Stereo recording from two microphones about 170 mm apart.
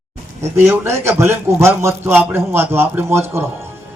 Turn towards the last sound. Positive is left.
turn(degrees=-15)  # may be behind; listen again after turning